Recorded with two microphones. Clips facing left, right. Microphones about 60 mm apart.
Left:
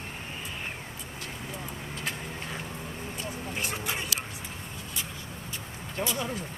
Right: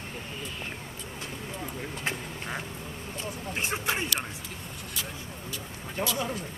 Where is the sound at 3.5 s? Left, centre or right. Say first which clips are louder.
Right 4 dB; right.